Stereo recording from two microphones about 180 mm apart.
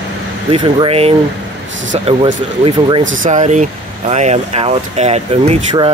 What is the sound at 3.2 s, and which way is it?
Speech, 40° right (ahead or behind).